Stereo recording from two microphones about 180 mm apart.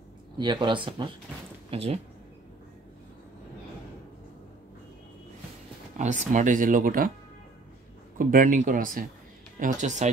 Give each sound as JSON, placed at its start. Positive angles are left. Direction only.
{"t": 0.4, "sound": "speech", "side_deg": -25}
{"t": 5.9, "sound": "speech", "side_deg": -45}
{"t": 8.2, "sound": "speech", "side_deg": -50}